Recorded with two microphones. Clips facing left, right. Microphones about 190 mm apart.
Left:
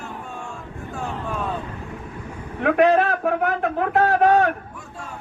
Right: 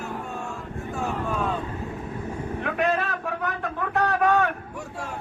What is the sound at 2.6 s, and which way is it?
A man's voice, 60° left (ahead or behind).